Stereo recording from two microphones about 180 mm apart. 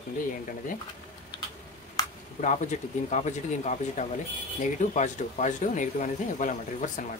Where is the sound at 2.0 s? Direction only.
20° left (ahead or behind).